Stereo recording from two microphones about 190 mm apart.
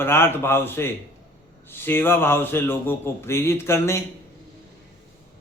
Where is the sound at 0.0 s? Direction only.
10° left (ahead or behind).